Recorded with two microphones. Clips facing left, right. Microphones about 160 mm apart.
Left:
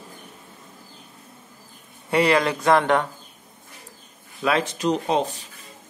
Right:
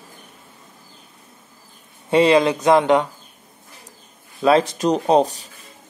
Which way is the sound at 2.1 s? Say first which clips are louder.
Right 5 dB; 20° right (ahead or behind).